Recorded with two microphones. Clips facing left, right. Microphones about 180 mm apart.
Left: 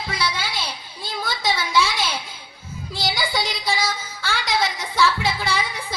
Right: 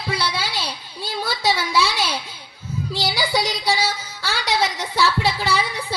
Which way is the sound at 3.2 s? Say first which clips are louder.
Right 3 dB; 35° right (ahead or behind).